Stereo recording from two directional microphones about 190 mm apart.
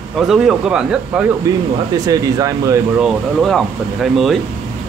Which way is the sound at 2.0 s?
20° right (ahead or behind).